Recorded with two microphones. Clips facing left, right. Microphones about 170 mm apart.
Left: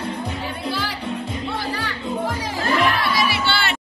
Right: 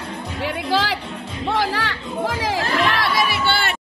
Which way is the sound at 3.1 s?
50° right (ahead or behind).